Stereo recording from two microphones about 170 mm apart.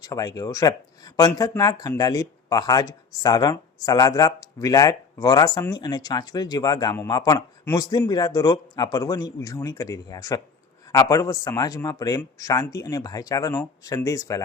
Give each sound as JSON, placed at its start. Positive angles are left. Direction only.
{"t": 0.0, "sound": "speech", "side_deg": 20}